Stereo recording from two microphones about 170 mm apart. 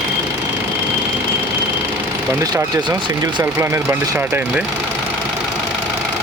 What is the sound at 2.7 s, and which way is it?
Speech, 25° right (ahead or behind).